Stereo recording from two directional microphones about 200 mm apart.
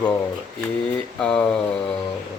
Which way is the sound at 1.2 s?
5° left (ahead or behind).